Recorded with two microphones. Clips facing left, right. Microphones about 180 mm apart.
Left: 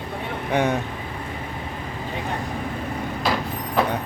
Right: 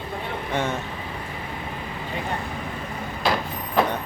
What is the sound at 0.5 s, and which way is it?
Speech, 15° left (ahead or behind).